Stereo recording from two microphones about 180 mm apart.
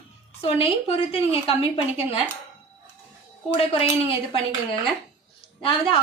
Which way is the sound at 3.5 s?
30° left (ahead or behind).